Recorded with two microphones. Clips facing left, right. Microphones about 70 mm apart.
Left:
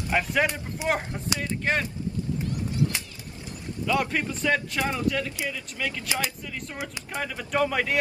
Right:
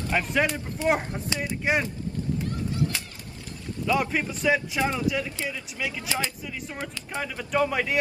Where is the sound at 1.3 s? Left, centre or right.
Centre.